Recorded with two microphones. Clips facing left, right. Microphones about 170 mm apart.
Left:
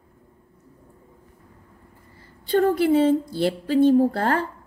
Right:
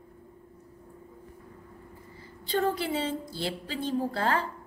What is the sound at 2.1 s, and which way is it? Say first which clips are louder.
A woman's voice: left 8 dB; 50° left (ahead or behind).